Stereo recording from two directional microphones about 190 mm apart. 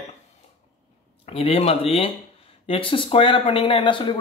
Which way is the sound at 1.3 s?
30° left (ahead or behind).